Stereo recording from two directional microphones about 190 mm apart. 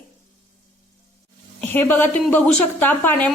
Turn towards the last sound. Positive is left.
turn(degrees=10)  # may be behind; listen again after turning